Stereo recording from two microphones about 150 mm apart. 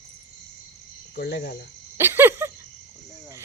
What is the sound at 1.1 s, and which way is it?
Speech, 90° left.